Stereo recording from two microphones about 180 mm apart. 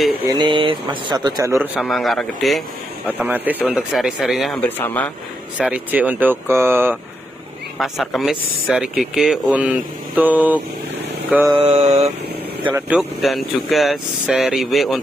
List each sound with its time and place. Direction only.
0.3 s speech: 25° right (ahead or behind)
1.8 s speech: centre (ahead or behind)
3.2 s speech: 10° right (ahead or behind); by 5.1 s 10° left (ahead or behind)
5.6 s speech: 10° right (ahead or behind)
7.8 s speech: centre (ahead or behind)
11.2 s mantra: 10° right (ahead or behind)
11.5 s mantra: 35° right (ahead or behind)
12.6 s speech: 10° right (ahead or behind)